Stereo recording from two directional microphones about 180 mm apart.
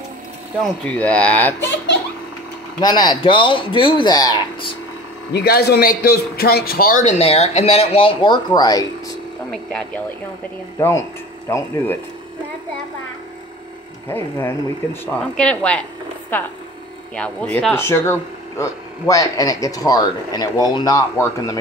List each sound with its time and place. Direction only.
0.8 s speech: 5° left (ahead or behind)
2.8 s speech: 25° left (ahead or behind)
5.3 s a man's voice: 65° left (ahead or behind)
7.1 s speech: 35° left (ahead or behind)
9.5 s speech: 5° left (ahead or behind)
10.8 s speech: 15° left (ahead or behind)
14.0 s speech: 15° left (ahead or behind)